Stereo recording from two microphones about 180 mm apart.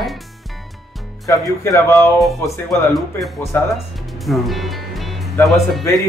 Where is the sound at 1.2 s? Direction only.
20° left (ahead or behind).